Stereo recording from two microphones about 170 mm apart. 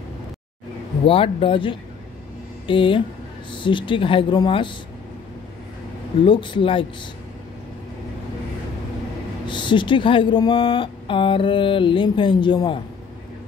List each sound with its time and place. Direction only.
1.0 s speech: 30° left (ahead or behind)
6.2 s speech: 30° left (ahead or behind)
9.5 s speech: 30° left (ahead or behind)